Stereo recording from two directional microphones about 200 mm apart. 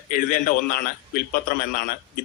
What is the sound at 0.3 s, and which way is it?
Speech, 45° left (ahead or behind).